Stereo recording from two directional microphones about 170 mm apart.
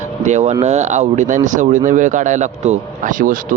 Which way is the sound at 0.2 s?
40° right (ahead or behind).